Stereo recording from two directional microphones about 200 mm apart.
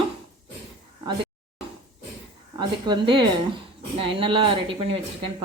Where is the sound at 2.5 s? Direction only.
25° right (ahead or behind).